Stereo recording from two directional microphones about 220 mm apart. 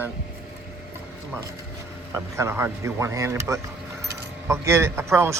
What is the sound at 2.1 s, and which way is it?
Speech, 10° right (ahead or behind).